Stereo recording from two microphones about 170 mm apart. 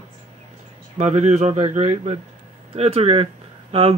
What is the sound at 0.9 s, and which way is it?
Speech, 45° right (ahead or behind).